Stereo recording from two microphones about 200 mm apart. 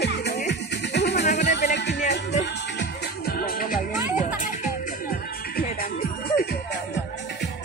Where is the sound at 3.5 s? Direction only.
45° left (ahead or behind).